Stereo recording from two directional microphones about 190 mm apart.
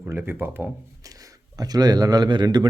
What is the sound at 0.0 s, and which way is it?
Speech, 10° right (ahead or behind).